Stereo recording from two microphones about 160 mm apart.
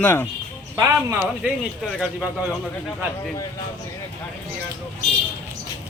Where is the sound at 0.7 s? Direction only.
20° right (ahead or behind).